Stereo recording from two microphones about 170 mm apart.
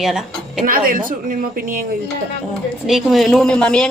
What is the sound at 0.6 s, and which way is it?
Speech, 55° right (ahead or behind).